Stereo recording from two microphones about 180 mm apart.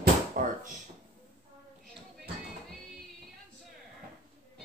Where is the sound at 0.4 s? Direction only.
50° right (ahead or behind).